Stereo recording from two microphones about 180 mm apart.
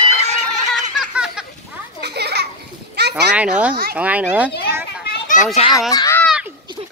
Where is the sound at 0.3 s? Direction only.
40° right (ahead or behind).